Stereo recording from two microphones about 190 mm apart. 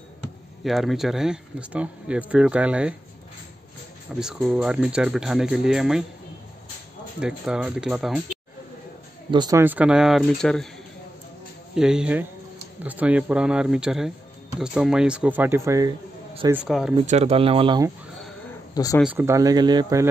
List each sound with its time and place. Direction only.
0.7 s speech: centre (ahead or behind)
4.2 s speech: centre (ahead or behind)
7.2 s speech: 5° right (ahead or behind)
9.3 s speech: 20° right (ahead or behind); by 10.7 s 5° left (ahead or behind)
11.7 s speech: 5° right (ahead or behind)
16.6 s speech: centre (ahead or behind)
17.0 s speech: 35° right (ahead or behind)
19.0 s speech: 15° right (ahead or behind)